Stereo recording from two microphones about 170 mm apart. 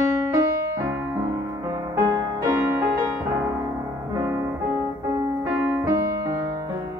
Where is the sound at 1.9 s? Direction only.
20° right (ahead or behind).